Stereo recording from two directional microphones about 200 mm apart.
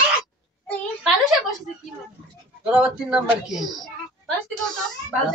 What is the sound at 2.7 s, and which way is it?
Speech, 5° right (ahead or behind).